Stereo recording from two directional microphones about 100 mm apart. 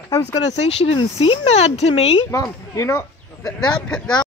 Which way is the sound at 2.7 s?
30° left (ahead or behind).